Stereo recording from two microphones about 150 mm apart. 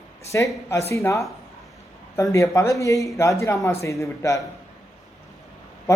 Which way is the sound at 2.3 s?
20° left (ahead or behind).